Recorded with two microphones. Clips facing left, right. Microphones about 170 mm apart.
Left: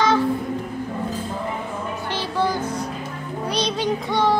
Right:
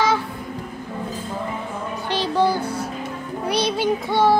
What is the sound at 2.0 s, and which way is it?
Music, 15° right (ahead or behind).